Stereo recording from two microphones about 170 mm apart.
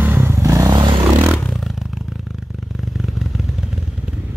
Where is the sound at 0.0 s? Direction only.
15° right (ahead or behind).